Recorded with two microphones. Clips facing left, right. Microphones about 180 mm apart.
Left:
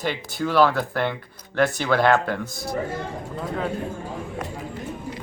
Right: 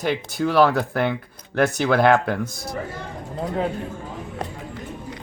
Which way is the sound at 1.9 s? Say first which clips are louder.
Right 3 dB; 50° right (ahead or behind).